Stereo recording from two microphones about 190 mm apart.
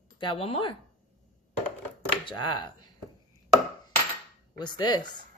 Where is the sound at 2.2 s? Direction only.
25° left (ahead or behind).